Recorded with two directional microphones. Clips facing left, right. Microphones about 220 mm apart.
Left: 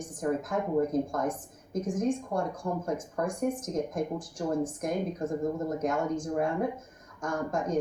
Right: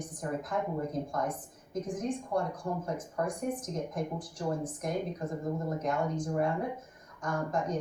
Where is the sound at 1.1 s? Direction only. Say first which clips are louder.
Left 3 dB; 45° left (ahead or behind).